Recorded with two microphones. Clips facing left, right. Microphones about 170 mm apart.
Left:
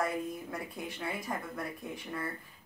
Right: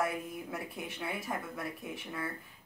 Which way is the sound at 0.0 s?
5° right (ahead or behind).